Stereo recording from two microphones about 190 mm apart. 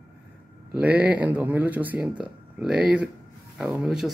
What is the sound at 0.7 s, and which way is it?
Speech, 10° right (ahead or behind).